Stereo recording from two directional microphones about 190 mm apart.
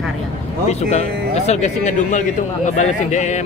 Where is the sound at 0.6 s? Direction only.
35° left (ahead or behind).